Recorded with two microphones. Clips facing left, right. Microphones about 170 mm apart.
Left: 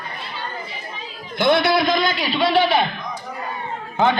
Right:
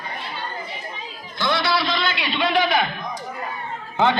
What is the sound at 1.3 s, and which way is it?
A man's voice, 55° left (ahead or behind).